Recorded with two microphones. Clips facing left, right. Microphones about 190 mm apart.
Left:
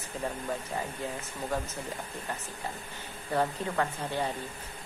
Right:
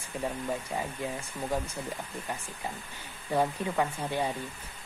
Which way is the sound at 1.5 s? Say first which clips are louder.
Right 1 dB; 15° right (ahead or behind).